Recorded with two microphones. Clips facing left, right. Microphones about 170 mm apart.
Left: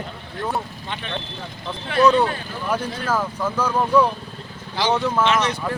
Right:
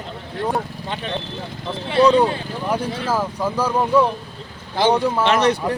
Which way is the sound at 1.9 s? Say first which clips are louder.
Right 2 dB; 30° right (ahead or behind).